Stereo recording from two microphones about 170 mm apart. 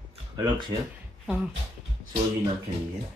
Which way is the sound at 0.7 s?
25° right (ahead or behind).